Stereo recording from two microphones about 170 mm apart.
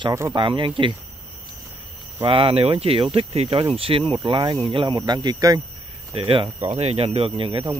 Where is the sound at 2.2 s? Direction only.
30° right (ahead or behind).